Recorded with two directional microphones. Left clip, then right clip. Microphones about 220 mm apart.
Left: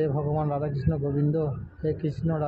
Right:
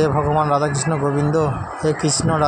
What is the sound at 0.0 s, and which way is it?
Speech, 25° right (ahead or behind).